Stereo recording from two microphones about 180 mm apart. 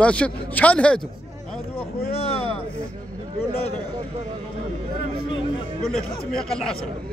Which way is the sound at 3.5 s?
35° left (ahead or behind).